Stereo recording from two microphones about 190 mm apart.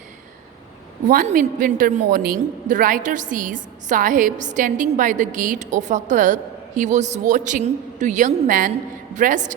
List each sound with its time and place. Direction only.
1.0 s a woman's voice: 45° right (ahead or behind)